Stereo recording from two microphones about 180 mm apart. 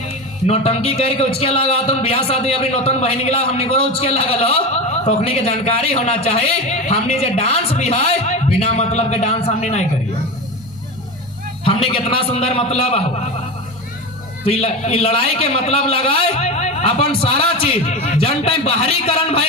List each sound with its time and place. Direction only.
0.4 s a man's voice: 35° left (ahead or behind)
11.6 s a man's voice: 30° left (ahead or behind)
14.4 s a man's voice: 35° left (ahead or behind)